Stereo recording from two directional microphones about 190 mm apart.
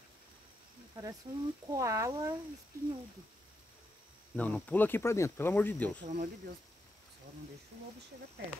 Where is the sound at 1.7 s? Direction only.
15° right (ahead or behind).